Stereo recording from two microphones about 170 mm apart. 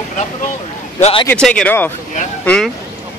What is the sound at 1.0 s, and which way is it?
Speech, 35° left (ahead or behind).